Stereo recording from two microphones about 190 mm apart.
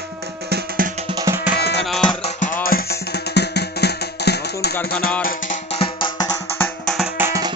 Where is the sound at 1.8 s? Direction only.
5° left (ahead or behind).